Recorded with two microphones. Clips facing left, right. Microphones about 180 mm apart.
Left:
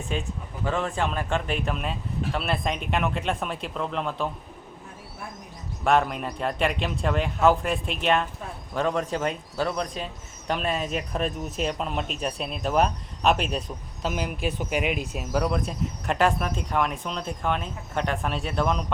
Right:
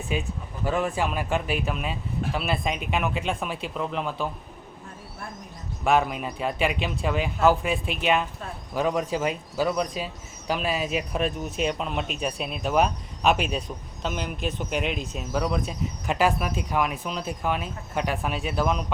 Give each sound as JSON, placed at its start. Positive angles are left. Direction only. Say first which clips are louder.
{"t": 0.1, "sound": "speech", "louder": "right 2 dB", "side_deg": -5}
{"t": 5.8, "sound": "speech", "louder": "even", "side_deg": 0}